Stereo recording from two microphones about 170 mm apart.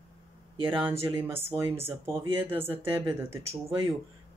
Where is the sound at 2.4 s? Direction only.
15° right (ahead or behind).